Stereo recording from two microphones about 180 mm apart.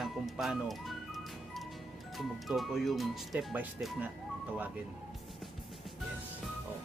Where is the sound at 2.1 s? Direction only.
Centre (ahead or behind).